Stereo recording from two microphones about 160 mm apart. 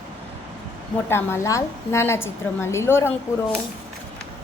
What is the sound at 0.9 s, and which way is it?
A woman's voice, 15° left (ahead or behind).